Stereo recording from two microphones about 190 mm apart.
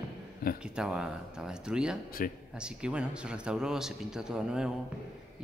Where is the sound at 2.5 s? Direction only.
5° right (ahead or behind).